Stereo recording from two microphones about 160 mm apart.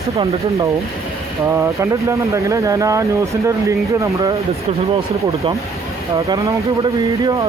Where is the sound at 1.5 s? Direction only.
15° right (ahead or behind).